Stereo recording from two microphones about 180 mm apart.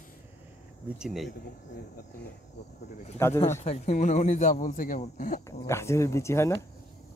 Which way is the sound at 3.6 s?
35° left (ahead or behind).